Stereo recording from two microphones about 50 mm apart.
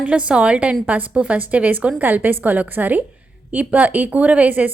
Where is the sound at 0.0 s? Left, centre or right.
Right.